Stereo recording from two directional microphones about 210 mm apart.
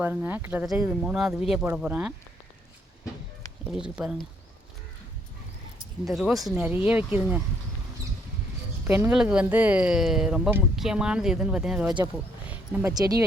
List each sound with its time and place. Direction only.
0.0 s speech: 10° right (ahead or behind)
3.7 s speech: 5° right (ahead or behind)
6.1 s speech: centre (ahead or behind)
8.9 s speech: 10° right (ahead or behind)
12.5 s a sound: 5° right (ahead or behind)
12.9 s speech: 20° right (ahead or behind)